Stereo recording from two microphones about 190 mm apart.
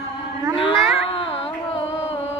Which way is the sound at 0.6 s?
30° left (ahead or behind).